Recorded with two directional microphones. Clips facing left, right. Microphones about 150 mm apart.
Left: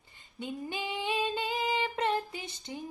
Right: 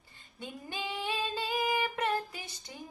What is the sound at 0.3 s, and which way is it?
Female singing, 15° left (ahead or behind).